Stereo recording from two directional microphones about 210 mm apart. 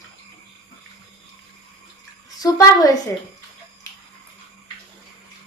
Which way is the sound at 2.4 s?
15° left (ahead or behind).